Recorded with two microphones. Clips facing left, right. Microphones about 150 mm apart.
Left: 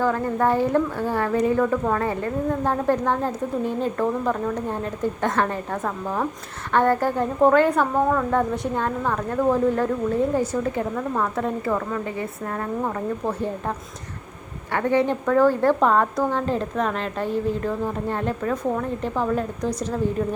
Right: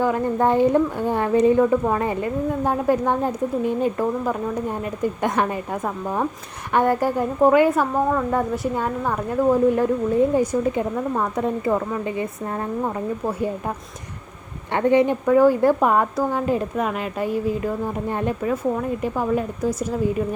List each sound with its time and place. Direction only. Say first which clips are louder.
0.0 s speech: right 2 dB; 20° right (ahead or behind)